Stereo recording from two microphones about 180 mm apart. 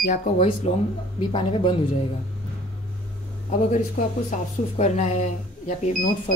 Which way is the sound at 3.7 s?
40° left (ahead or behind).